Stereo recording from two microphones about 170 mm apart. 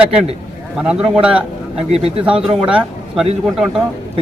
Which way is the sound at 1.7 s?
35° right (ahead or behind).